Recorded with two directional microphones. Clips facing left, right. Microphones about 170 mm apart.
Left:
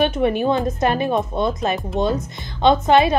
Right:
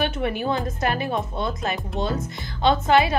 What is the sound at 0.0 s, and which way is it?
A woman's voice, 20° left (ahead or behind).